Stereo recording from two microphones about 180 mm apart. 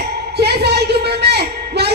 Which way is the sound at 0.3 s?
65° right (ahead or behind).